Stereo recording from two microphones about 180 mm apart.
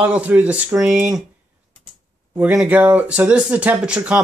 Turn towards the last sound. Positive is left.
turn(degrees=-5)  # may be behind; listen again after turning